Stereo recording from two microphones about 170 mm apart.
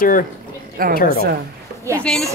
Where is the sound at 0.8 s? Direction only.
60° right (ahead or behind).